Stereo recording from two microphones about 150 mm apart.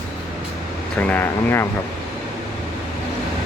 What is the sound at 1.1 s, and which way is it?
Speech, 15° left (ahead or behind).